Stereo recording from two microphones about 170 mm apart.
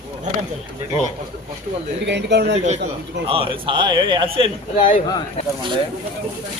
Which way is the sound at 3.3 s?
30° right (ahead or behind).